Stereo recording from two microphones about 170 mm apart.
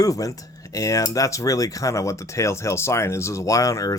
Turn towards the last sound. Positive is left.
turn(degrees=20)  # may be behind; listen again after turning